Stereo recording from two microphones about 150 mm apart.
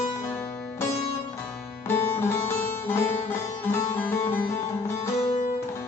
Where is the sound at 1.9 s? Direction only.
15° left (ahead or behind).